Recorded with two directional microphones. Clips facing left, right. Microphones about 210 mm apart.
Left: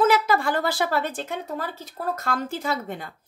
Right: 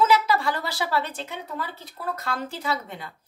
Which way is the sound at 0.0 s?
50° left (ahead or behind).